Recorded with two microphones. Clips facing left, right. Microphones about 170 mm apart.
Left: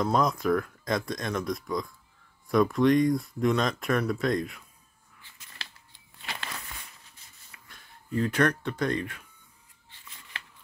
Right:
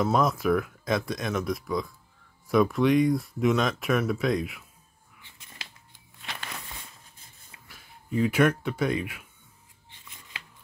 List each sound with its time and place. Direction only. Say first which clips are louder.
0.0 s speech: right 1 dB; 5° right (ahead or behind)
7.6 s speech: right 2 dB; 5° right (ahead or behind)
9.8 s scissors: right 1 dB; 20° right (ahead or behind)